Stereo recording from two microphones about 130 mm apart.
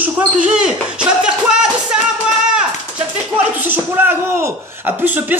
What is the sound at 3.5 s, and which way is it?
A man's voice, 15° right (ahead or behind).